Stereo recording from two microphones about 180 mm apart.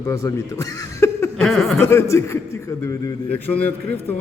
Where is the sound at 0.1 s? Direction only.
20° left (ahead or behind).